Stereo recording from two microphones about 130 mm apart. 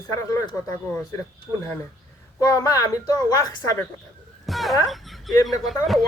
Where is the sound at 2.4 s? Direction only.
25° left (ahead or behind).